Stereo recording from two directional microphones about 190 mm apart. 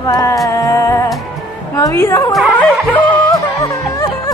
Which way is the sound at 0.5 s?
15° left (ahead or behind).